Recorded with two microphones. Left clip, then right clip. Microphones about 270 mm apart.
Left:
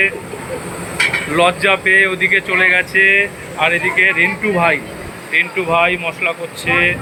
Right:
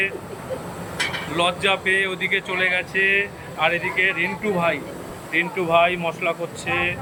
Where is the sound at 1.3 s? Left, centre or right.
Centre.